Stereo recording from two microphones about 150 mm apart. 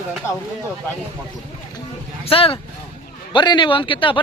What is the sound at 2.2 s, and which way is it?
A woman's voice, 40° left (ahead or behind).